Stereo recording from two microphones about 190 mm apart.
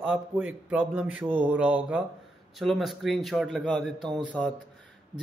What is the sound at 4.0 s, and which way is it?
Speech, 25° right (ahead or behind).